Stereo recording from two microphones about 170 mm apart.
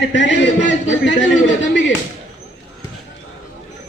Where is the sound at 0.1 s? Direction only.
90° left.